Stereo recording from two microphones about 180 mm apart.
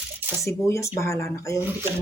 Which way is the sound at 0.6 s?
15° left (ahead or behind).